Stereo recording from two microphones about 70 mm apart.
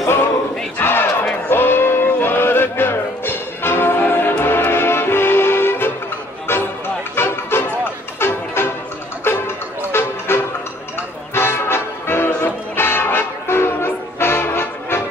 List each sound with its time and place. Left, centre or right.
0.7 s battle cry: left
1.5 s music: left